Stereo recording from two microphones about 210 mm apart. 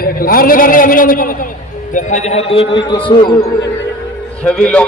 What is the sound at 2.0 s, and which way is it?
A man's voice, 35° left (ahead or behind).